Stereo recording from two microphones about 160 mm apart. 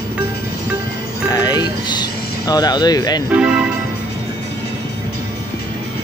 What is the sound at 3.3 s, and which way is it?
Speech, 5° right (ahead or behind).